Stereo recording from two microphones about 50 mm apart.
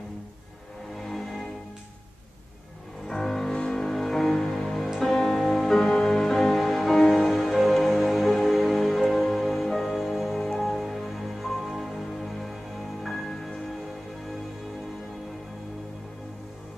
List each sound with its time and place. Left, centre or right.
1.0 s music: centre
3.1 s music: centre